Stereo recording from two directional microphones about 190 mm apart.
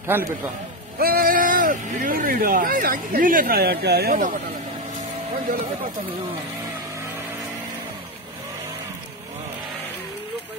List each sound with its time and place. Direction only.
0.0 s a man's voice: 15° right (ahead or behind)
0.9 s speech: 50° right (ahead or behind)